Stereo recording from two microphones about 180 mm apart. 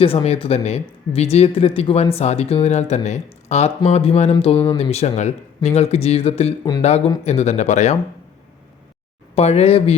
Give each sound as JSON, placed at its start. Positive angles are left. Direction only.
{"t": 0.0, "sound": "speech", "side_deg": 35}
{"t": 9.3, "sound": "speech", "side_deg": 35}